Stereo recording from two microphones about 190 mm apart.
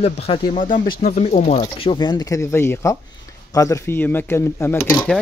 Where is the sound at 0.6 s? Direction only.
45° left (ahead or behind).